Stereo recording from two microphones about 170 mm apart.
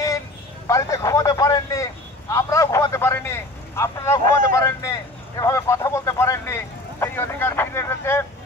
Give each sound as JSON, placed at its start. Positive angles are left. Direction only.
{"t": 0.7, "sound": "speech", "side_deg": 20}
{"t": 5.4, "sound": "vehicle", "side_deg": 20}